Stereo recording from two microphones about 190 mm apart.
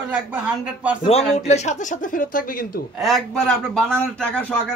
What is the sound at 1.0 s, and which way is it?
Speech, 35° left (ahead or behind).